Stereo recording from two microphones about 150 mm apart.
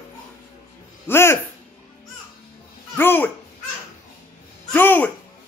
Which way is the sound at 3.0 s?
15° left (ahead or behind).